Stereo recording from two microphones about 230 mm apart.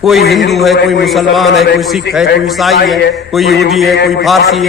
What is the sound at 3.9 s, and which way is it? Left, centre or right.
Speech, left.